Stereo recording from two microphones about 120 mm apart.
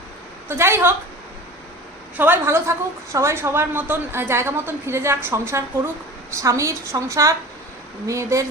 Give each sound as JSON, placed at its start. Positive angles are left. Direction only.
{"t": 0.4, "sound": "a woman's voice", "side_deg": -20}
{"t": 2.1, "sound": "a woman's voice", "side_deg": -15}